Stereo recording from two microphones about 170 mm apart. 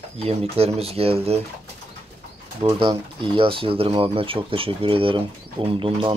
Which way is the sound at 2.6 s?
30° right (ahead or behind).